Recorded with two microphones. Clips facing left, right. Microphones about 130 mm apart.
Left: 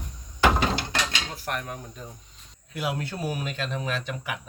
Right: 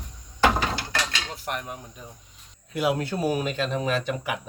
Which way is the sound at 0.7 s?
20° left (ahead or behind).